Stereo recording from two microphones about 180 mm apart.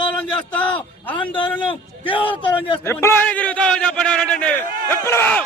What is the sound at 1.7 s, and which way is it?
A man's voice, 30° left (ahead or behind).